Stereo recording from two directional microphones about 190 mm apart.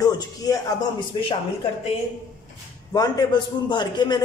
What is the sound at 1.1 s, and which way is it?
Speech, 25° left (ahead or behind).